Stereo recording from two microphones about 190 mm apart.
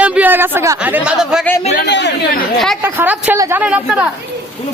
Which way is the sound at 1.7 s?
65° left (ahead or behind).